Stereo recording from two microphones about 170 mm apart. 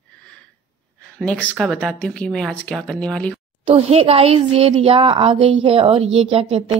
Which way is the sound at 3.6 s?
35° right (ahead or behind).